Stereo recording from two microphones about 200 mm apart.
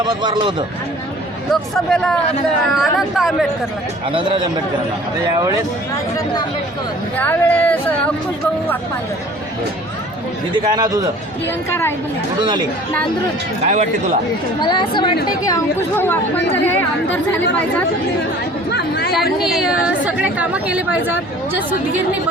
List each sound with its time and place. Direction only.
0.0 s a man's voice: 20° right (ahead or behind)
1.7 s speech: 5° left (ahead or behind)
4.1 s a man's voice: 25° right (ahead or behind)
7.2 s a woman's voice: 10° left (ahead or behind)
10.6 s a man's voice: 20° right (ahead or behind)
11.7 s a woman's voice: 10° left (ahead or behind)
13.7 s speech: 35° right (ahead or behind)
14.6 s a woman's voice: 25° left (ahead or behind)
18.7 s speech: 55° left (ahead or behind)
19.4 s a woman's voice: centre (ahead or behind)